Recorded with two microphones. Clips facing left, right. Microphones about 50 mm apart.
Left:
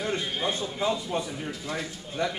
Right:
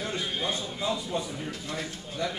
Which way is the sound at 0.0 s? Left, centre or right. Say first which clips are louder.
Left 2 dB; centre.